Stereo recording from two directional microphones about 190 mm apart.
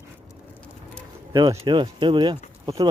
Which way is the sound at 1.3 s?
25° right (ahead or behind).